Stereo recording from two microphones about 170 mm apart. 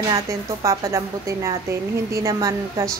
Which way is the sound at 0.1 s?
20° right (ahead or behind).